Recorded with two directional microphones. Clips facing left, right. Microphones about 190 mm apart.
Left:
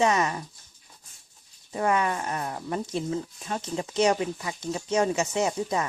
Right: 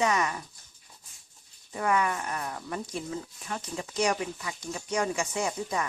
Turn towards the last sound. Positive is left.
turn(degrees=25)  # may be behind; listen again after turning